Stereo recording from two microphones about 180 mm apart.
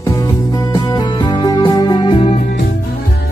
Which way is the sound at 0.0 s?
20° left (ahead or behind).